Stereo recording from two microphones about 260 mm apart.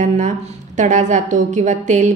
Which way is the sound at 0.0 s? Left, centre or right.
Right.